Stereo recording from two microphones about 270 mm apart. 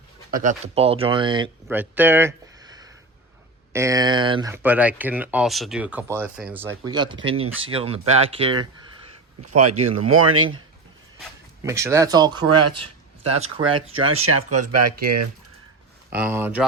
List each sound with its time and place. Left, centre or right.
0.3 s speech: right
1.6 s speech: centre
9.5 s speech: right
11.6 s speech: centre
12.5 s speech: right
12.8 s speech: right
14.6 s speech: right
16.1 s speech: centre